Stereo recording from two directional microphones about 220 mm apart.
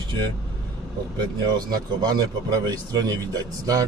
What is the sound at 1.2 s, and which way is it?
A man's voice, 20° right (ahead or behind).